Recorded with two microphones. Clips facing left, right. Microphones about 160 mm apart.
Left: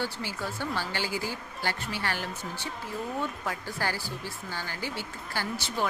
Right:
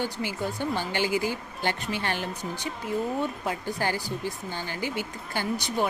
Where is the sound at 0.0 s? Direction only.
15° right (ahead or behind).